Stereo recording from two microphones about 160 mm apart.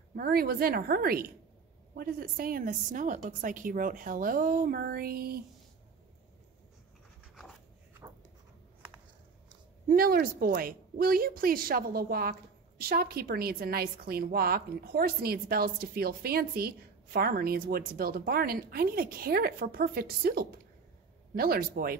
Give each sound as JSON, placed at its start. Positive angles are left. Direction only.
{"t": 0.1, "sound": "a woman's voice", "side_deg": -70}
{"t": 9.8, "sound": "a woman's voice", "side_deg": -65}